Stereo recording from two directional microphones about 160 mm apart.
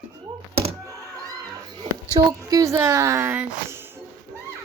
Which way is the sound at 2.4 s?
20° right (ahead or behind).